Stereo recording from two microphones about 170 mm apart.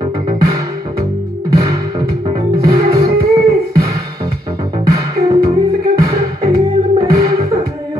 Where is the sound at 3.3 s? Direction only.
20° right (ahead or behind).